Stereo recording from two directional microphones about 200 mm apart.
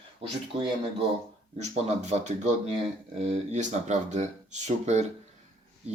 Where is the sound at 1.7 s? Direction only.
35° right (ahead or behind).